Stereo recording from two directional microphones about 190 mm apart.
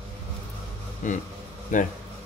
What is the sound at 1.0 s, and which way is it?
Speech, 40° left (ahead or behind).